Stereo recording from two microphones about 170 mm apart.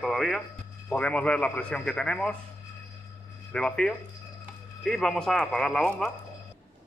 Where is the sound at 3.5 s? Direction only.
5° left (ahead or behind).